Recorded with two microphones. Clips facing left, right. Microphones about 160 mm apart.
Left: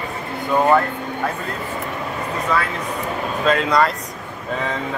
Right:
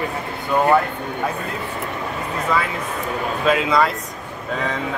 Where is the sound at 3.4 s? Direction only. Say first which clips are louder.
Even; 5° right (ahead or behind).